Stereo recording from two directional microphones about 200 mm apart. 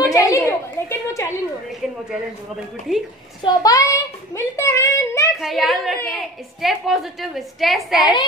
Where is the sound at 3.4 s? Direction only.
15° left (ahead or behind).